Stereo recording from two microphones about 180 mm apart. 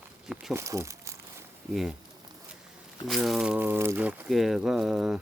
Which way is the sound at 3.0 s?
Centre (ahead or behind).